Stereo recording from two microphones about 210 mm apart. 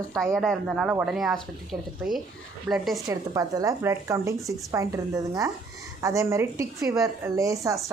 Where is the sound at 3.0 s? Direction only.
15° right (ahead or behind).